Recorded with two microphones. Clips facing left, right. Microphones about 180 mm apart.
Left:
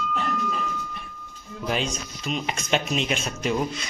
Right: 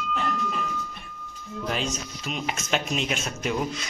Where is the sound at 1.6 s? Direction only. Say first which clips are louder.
Left 2 dB; centre (ahead or behind).